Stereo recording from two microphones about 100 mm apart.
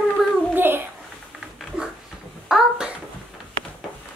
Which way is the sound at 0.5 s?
20° right (ahead or behind).